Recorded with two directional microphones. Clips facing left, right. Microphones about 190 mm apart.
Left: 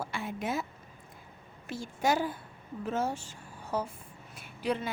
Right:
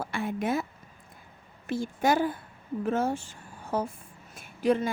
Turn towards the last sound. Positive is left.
turn(degrees=-45)  # may be behind; listen again after turning